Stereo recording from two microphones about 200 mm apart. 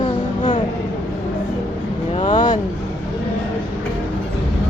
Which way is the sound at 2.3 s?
40° left (ahead or behind).